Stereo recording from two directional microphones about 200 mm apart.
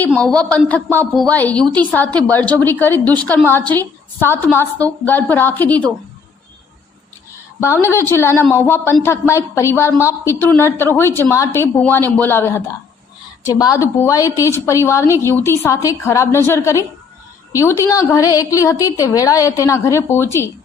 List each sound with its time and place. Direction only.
0.0 s a woman's voice: 5° left (ahead or behind)
7.6 s a woman's voice: 15° left (ahead or behind)